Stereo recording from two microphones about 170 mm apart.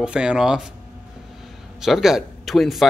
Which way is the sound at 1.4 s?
Centre (ahead or behind).